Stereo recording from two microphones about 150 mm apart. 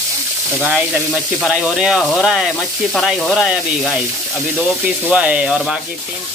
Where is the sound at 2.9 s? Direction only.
5° left (ahead or behind).